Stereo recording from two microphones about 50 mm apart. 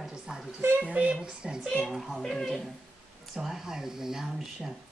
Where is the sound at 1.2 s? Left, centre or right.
Centre.